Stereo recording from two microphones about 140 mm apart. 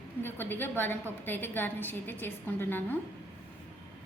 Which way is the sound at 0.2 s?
15° left (ahead or behind).